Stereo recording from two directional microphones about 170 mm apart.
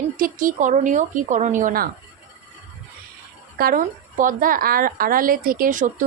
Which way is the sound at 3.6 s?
55° right (ahead or behind).